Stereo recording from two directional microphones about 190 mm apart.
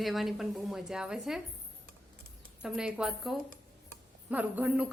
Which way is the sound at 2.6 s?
5° right (ahead or behind).